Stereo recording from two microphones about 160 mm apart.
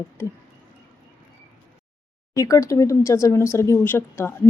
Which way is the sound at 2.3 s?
20° left (ahead or behind).